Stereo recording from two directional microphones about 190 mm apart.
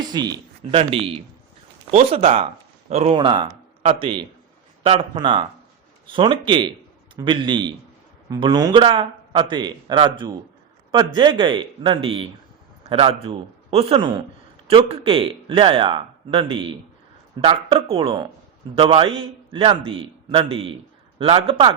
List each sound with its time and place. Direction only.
0.0 s a man's voice: 20° right (ahead or behind)